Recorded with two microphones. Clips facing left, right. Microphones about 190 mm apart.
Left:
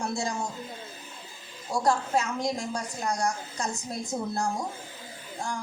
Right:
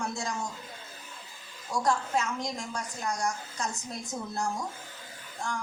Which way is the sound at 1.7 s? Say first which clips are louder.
Left 3 dB; 35° left (ahead or behind).